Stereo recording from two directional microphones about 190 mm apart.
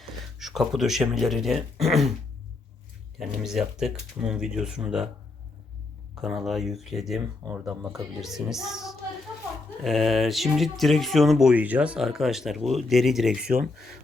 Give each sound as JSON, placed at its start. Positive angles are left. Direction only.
{"t": 0.0, "sound": "speech", "side_deg": 0}
{"t": 3.2, "sound": "speech", "side_deg": 0}
{"t": 6.2, "sound": "speech", "side_deg": 0}